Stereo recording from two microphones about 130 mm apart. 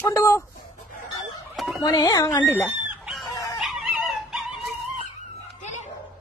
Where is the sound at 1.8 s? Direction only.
30° left (ahead or behind).